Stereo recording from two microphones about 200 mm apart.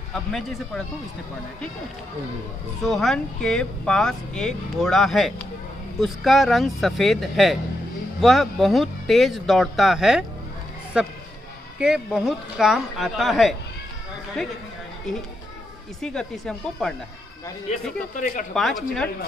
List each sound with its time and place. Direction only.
0.1 s speech: centre (ahead or behind)
2.8 s speech: centre (ahead or behind)
16.0 s speech: 5° left (ahead or behind)
17.7 s speech: 35° left (ahead or behind)
18.5 s speech: centre (ahead or behind)